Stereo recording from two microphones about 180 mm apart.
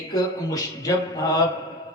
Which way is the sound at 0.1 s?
20° left (ahead or behind).